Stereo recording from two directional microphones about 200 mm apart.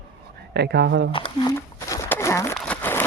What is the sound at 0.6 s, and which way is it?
Speech, 55° right (ahead or behind).